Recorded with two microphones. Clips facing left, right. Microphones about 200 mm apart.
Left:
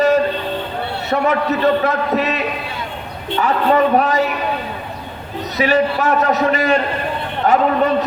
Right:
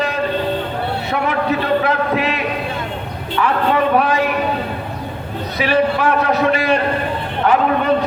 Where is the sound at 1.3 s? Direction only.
40° left (ahead or behind).